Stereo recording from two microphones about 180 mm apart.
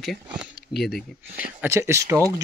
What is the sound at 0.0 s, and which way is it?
Speech, centre (ahead or behind).